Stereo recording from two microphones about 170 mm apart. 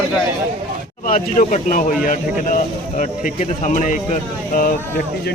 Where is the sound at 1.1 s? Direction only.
45° left (ahead or behind).